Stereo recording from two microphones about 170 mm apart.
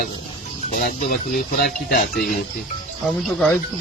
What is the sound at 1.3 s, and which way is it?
Speech, 60° left (ahead or behind).